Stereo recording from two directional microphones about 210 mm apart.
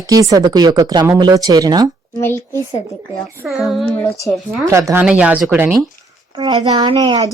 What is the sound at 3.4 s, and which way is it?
Speech, centre (ahead or behind).